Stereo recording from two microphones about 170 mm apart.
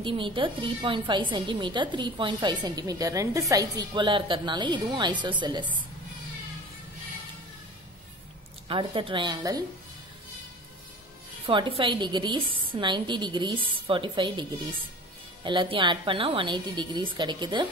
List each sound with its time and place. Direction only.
0.0 s a woman's voice: 30° right (ahead or behind)
8.6 s a woman's voice: 30° right (ahead or behind)
11.4 s a woman's voice: 30° right (ahead or behind)
15.4 s a woman's voice: 30° right (ahead or behind)